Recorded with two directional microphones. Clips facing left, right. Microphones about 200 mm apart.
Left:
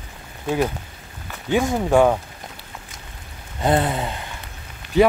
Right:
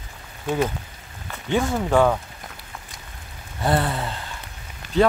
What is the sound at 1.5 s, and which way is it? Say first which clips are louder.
Speech: left 2 dB; 15° left (ahead or behind).